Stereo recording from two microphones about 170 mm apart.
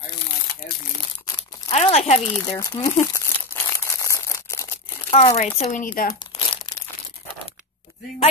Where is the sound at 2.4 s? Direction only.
15° left (ahead or behind).